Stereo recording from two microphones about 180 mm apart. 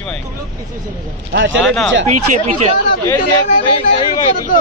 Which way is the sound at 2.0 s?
40° right (ahead or behind).